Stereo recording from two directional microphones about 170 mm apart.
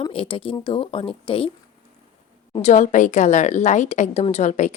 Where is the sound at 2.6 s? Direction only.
45° left (ahead or behind).